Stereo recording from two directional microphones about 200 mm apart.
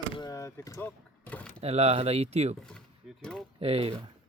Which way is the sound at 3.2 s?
5° left (ahead or behind).